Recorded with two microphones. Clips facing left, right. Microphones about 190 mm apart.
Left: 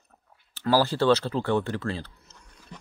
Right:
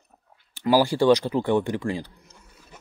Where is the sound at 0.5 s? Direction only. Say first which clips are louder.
Right 3 dB; 15° right (ahead or behind).